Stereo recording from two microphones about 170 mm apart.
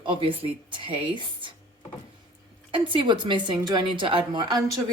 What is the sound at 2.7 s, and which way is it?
Speech, 30° right (ahead or behind).